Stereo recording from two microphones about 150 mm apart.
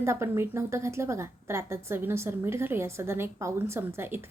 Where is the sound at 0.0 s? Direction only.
20° right (ahead or behind).